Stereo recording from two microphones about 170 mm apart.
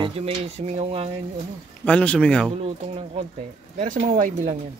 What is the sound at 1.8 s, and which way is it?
Speech, 5° left (ahead or behind).